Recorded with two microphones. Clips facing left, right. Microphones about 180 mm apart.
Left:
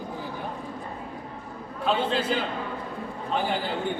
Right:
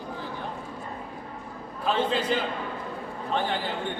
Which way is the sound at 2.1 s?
5° left (ahead or behind).